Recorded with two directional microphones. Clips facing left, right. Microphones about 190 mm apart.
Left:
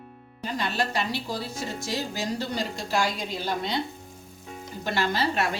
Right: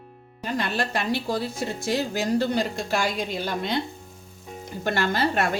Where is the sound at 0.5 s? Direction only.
55° right (ahead or behind).